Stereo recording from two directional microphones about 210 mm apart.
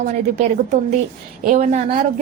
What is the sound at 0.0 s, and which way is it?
A woman's voice, 35° right (ahead or behind).